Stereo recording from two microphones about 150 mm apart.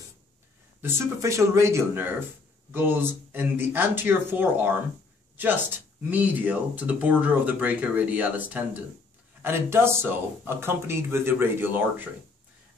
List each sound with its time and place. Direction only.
0.8 s speech: 15° right (ahead or behind)